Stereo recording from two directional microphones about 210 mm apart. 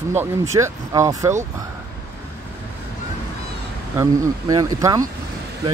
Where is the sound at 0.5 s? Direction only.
15° right (ahead or behind).